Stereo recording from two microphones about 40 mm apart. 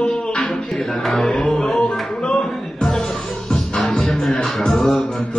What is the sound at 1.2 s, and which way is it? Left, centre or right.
A capella, left.